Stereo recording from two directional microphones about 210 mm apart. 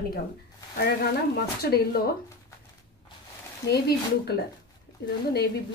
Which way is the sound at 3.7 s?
50° left (ahead or behind).